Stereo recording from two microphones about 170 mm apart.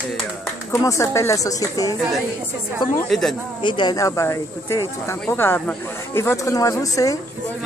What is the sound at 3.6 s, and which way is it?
Speech, 25° left (ahead or behind).